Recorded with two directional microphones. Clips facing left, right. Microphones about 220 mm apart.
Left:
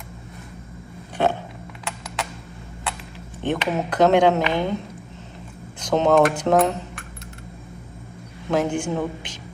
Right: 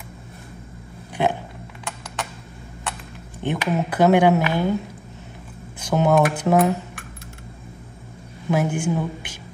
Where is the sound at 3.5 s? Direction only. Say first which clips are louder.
Even; 5° right (ahead or behind).